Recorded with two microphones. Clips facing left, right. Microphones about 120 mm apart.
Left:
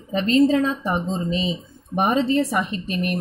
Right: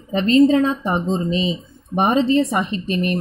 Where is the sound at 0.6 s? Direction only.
30° right (ahead or behind).